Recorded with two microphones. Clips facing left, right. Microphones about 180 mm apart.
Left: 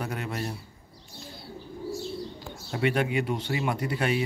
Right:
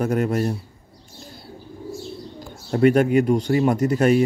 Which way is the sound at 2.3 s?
45° right (ahead or behind).